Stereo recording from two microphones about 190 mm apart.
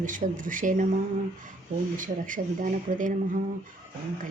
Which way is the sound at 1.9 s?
45° right (ahead or behind).